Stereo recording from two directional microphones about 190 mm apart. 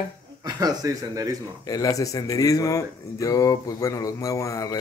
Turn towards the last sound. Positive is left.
turn(degrees=20)  # may be behind; listen again after turning